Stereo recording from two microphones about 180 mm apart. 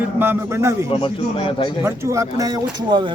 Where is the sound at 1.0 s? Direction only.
30° left (ahead or behind).